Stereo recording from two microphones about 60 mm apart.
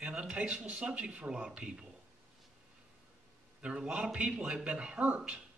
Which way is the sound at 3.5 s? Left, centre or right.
Centre.